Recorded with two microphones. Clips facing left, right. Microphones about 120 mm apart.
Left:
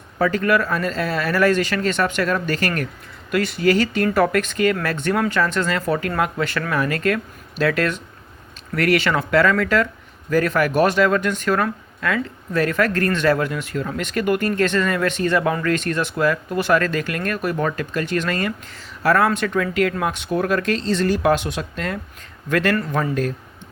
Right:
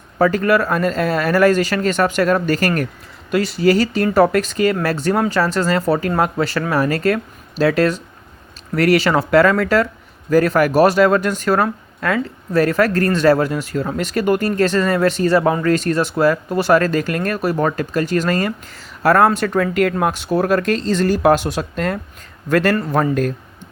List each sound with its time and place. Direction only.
0.2 s speech: 40° right (ahead or behind)